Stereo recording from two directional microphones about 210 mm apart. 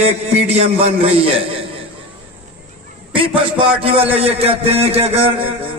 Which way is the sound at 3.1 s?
25° right (ahead or behind).